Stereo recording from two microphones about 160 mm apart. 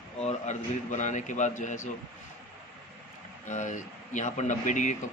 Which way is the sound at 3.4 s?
50° left (ahead or behind).